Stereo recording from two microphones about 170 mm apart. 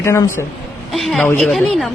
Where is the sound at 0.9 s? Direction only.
Centre (ahead or behind).